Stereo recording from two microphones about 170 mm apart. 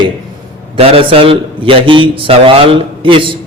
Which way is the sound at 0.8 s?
35° right (ahead or behind).